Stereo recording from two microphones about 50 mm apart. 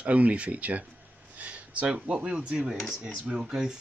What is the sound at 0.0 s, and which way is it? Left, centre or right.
Speech, right.